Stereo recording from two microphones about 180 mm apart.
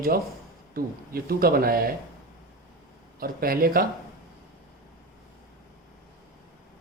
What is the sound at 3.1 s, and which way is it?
Speech, 55° right (ahead or behind).